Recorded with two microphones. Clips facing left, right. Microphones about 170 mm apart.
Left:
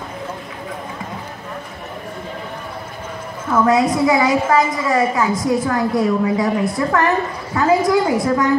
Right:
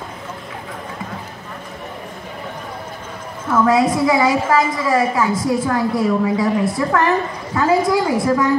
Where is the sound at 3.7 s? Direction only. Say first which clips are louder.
Left 1 dB; 20° left (ahead or behind).